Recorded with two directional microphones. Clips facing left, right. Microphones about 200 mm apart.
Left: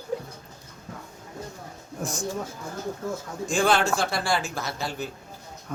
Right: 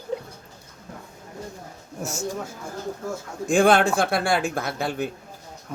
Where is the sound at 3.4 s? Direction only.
55° right (ahead or behind).